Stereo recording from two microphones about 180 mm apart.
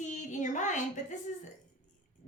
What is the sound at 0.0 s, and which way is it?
Child singing, 45° left (ahead or behind).